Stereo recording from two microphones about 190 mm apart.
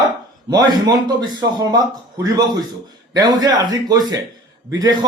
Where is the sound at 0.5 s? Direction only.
20° right (ahead or behind).